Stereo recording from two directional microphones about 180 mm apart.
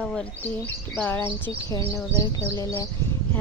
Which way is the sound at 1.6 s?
20° left (ahead or behind).